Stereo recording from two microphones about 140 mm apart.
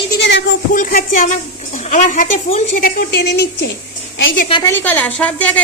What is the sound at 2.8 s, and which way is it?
Speech, 90° left.